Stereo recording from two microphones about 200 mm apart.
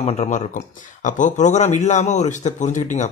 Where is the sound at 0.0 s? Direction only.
30° left (ahead or behind).